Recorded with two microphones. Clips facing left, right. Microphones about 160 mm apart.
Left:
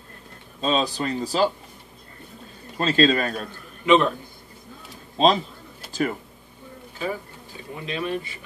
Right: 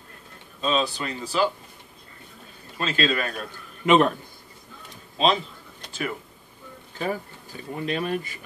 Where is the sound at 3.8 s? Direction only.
45° right (ahead or behind).